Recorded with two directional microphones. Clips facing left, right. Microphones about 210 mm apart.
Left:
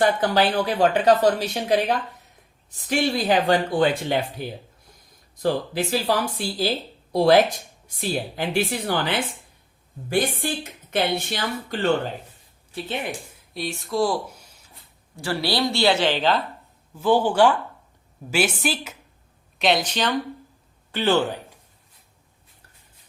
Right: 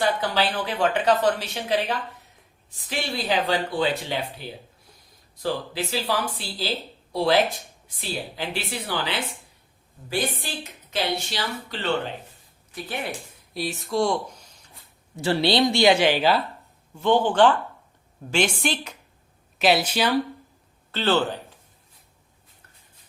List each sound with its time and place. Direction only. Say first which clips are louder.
0.0 s speech: left 4 dB; 50° left (ahead or behind)
2.9 s speech: left 5 dB; 50° left (ahead or behind)
12.7 s speech: left 2 dB; 20° left (ahead or behind)
13.5 s speech: even; centre (ahead or behind)
15.1 s speech: right 4 dB; 20° right (ahead or behind)
16.9 s speech: left 1 dB; 5° left (ahead or behind)
19.5 s speech: right 1 dB; 5° right (ahead or behind)
20.9 s speech: left 2 dB; 15° left (ahead or behind)